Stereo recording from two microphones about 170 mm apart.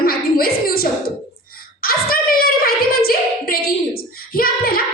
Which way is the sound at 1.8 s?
60° left (ahead or behind).